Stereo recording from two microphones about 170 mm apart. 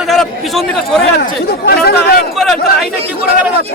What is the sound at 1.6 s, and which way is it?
Speech, 65° left (ahead or behind).